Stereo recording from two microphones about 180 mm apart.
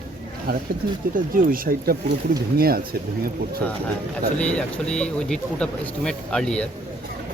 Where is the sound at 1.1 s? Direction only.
50° right (ahead or behind).